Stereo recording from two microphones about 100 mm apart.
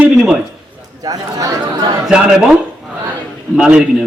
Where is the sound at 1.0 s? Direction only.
35° right (ahead or behind).